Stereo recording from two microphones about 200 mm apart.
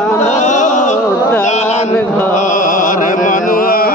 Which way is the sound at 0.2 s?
35° left (ahead or behind).